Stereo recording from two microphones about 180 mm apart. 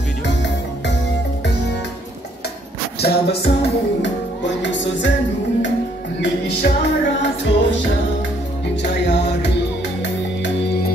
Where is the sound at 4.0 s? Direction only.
85° left.